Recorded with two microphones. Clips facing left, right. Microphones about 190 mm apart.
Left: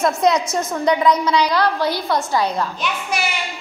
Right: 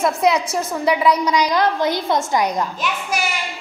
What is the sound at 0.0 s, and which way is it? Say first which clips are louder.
A woman's voice: even; 5° right (ahead or behind).